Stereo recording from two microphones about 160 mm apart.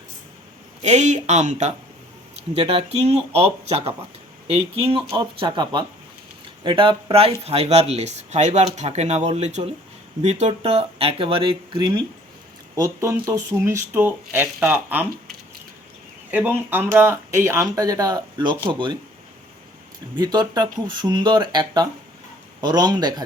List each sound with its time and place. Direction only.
0.8 s speech: 45° right (ahead or behind); by 15.0 s 10° right (ahead or behind)
16.3 s speech: 10° right (ahead or behind); by 18.9 s 30° right (ahead or behind)
20.1 s speech: 25° right (ahead or behind)